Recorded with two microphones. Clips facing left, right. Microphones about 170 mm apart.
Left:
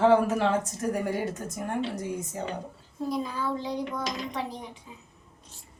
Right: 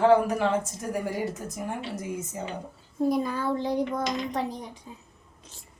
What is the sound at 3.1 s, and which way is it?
A child's voice, 55° right (ahead or behind).